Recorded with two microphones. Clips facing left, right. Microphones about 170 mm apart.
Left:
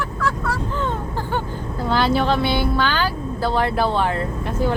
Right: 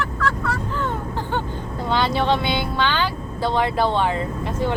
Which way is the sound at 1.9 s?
5° left (ahead or behind).